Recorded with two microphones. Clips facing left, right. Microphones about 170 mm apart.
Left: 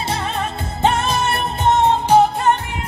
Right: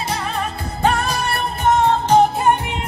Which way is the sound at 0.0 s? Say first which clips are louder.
Left 1 dB; 25° left (ahead or behind).